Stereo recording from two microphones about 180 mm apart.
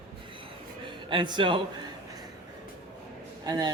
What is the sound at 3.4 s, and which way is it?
Speech, 20° right (ahead or behind).